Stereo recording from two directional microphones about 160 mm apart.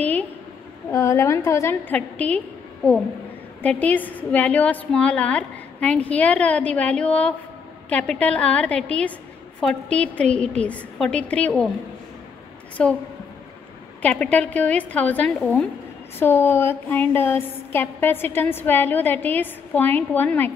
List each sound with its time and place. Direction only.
0.9 s a woman's voice: 20° left (ahead or behind)
12.8 s a woman's voice: 5° left (ahead or behind)
14.2 s a woman's voice: 10° left (ahead or behind)